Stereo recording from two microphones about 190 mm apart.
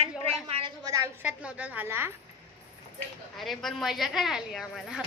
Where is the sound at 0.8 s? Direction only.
20° right (ahead or behind).